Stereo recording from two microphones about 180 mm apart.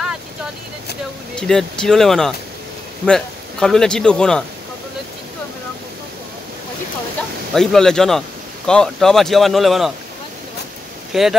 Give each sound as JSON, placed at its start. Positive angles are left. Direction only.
{"t": 1.3, "sound": "a man's voice", "side_deg": 0}
{"t": 7.5, "sound": "speech", "side_deg": 5}
{"t": 11.1, "sound": "speech", "side_deg": 0}